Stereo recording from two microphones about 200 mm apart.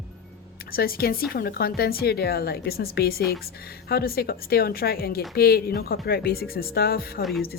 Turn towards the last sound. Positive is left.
turn(degrees=50)  # may be behind; listen again after turning